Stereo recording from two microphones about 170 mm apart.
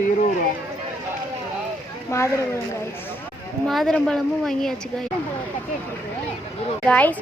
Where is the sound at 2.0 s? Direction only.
15° left (ahead or behind).